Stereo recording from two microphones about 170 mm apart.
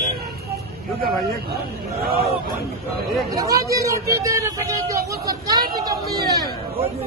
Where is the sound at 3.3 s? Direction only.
20° right (ahead or behind).